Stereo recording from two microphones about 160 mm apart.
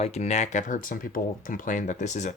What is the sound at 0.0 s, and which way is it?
Speech, 45° left (ahead or behind).